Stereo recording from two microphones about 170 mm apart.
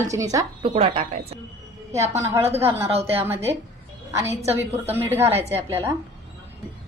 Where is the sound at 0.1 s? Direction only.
20° right (ahead or behind).